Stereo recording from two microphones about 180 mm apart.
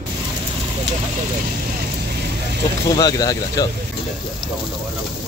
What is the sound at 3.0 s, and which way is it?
Speech, 20° left (ahead or behind).